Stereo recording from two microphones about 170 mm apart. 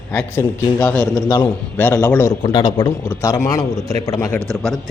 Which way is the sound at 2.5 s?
25° left (ahead or behind).